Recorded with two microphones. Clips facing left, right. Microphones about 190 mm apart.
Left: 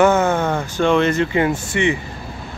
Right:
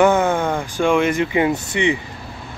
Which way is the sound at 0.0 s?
15° right (ahead or behind).